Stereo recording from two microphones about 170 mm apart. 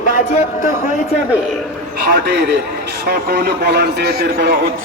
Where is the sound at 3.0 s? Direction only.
65° right (ahead or behind).